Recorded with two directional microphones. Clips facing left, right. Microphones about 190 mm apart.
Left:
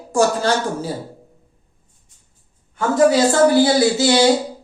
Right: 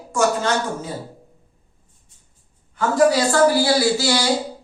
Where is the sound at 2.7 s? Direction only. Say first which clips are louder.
Left 2 dB; 20° left (ahead or behind).